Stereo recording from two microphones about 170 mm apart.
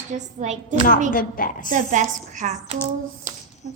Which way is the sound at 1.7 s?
45° right (ahead or behind).